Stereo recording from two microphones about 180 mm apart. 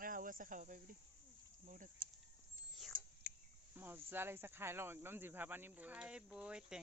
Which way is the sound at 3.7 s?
10° right (ahead or behind).